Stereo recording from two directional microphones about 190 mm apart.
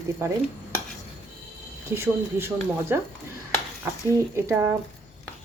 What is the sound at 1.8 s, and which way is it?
Speech, 15° right (ahead or behind).